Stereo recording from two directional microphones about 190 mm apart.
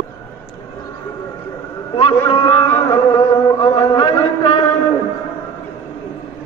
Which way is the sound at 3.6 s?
20° left (ahead or behind).